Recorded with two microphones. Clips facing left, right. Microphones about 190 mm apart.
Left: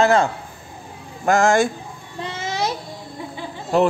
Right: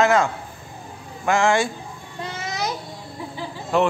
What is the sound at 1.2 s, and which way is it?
Speech, 40° left (ahead or behind).